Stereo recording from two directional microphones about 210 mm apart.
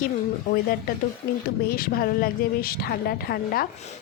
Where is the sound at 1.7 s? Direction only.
45° left (ahead or behind).